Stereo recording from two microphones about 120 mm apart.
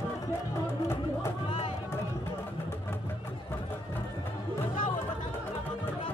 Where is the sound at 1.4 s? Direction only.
50° left (ahead or behind).